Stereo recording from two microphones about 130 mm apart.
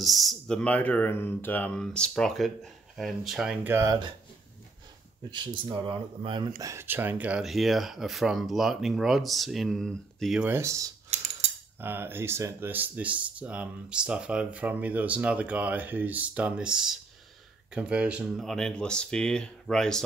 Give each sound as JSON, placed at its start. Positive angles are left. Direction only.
{"t": 0.0, "sound": "speech", "side_deg": 0}
{"t": 3.6, "sound": "speech", "side_deg": -20}
{"t": 5.3, "sound": "speech", "side_deg": -35}
{"t": 6.6, "sound": "speech", "side_deg": -20}
{"t": 10.4, "sound": "speech", "side_deg": -20}
{"t": 11.1, "sound": "mechanisms", "side_deg": -60}
{"t": 11.8, "sound": "speech", "side_deg": -15}
{"t": 18.4, "sound": "speech", "side_deg": 5}